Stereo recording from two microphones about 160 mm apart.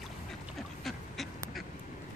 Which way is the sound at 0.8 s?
Centre (ahead or behind).